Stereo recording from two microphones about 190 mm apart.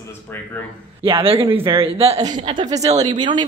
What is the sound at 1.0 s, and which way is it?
Speech, 30° right (ahead or behind).